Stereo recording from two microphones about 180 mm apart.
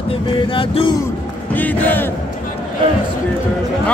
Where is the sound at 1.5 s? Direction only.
10° left (ahead or behind).